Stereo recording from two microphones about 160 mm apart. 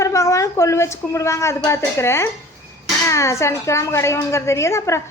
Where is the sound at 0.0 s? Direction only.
20° left (ahead or behind).